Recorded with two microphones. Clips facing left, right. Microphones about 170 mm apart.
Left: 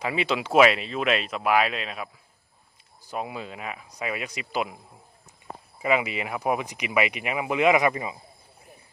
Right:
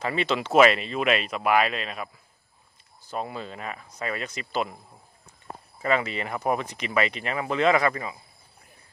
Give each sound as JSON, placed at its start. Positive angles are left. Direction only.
{"t": 0.0, "sound": "speech", "side_deg": 10}
{"t": 3.1, "sound": "speech", "side_deg": 10}
{"t": 5.8, "sound": "speech", "side_deg": 10}